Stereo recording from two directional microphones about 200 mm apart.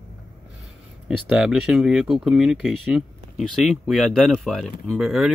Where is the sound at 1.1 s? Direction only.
5° right (ahead or behind).